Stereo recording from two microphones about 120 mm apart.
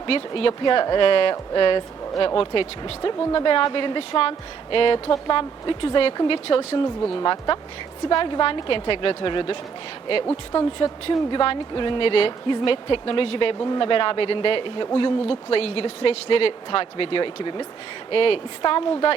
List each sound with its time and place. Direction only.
0.0 s a woman's voice: 45° left (ahead or behind)
10.5 s a woman's voice: 35° left (ahead or behind)
11.0 s speech: 45° left (ahead or behind)